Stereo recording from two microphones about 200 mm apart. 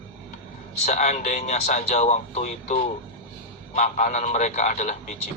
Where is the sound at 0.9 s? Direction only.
35° left (ahead or behind).